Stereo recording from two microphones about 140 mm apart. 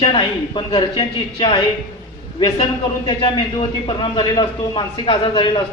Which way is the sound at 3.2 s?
35° left (ahead or behind).